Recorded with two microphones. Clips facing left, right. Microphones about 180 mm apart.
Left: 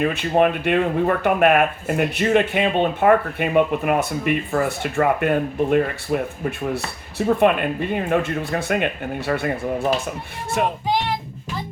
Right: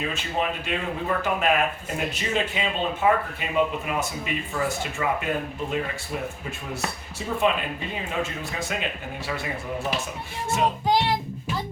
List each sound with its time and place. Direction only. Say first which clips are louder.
0.0 s speech: left 10 dB; 60° left (ahead or behind)